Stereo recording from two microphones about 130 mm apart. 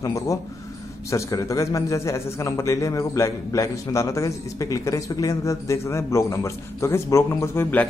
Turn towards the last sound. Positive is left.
turn(degrees=15)  # may be behind; listen again after turning